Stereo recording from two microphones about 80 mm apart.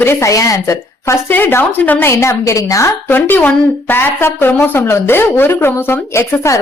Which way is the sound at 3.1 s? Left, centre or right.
Left.